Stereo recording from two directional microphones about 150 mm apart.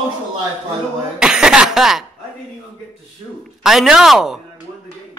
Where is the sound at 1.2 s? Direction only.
5° right (ahead or behind).